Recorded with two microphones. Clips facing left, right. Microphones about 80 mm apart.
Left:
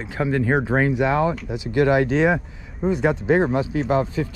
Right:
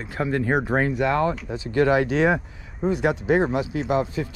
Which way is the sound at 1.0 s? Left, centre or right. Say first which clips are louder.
Left 2 dB; centre.